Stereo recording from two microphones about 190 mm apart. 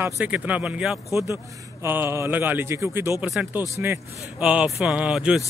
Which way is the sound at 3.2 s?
Centre (ahead or behind).